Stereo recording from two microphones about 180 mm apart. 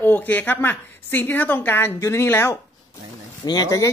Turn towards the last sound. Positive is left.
turn(degrees=20)  # may be behind; listen again after turning